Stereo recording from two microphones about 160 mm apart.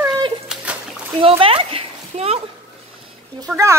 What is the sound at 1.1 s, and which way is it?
Speech, 35° right (ahead or behind).